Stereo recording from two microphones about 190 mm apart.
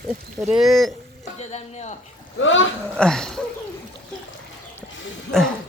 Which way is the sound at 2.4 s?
85° left.